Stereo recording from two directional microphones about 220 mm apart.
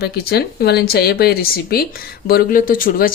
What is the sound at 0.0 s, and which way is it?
A woman's voice, 45° left (ahead or behind).